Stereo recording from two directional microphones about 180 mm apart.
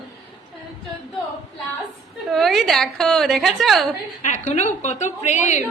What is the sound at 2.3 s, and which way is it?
A woman's voice, centre (ahead or behind).